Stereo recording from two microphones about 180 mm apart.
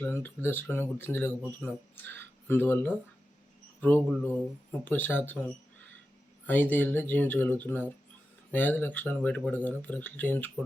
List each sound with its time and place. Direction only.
0.0 s speech: 10° left (ahead or behind)
6.4 s speech: 10° left (ahead or behind)